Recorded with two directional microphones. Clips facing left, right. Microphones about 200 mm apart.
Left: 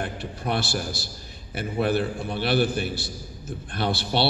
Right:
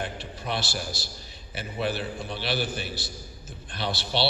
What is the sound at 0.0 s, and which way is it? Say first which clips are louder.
A man's voice: left 4 dB; 55° left (ahead or behind).